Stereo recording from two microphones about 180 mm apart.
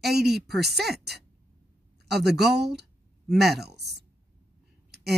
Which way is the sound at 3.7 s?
65° right (ahead or behind).